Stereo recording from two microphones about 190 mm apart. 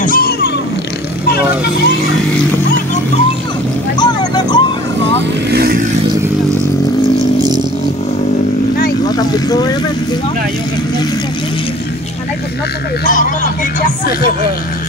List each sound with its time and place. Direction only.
0.0 s vehicle: 50° left (ahead or behind)
4.0 s vehicle: 20° left (ahead or behind)
5.5 s vehicle: 55° right (ahead or behind)
9.0 s boat: 20° left (ahead or behind)
13.0 s speech: 45° left (ahead or behind)